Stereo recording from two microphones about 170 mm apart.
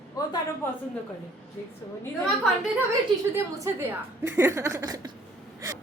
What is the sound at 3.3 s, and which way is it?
A woman's voice, 15° right (ahead or behind).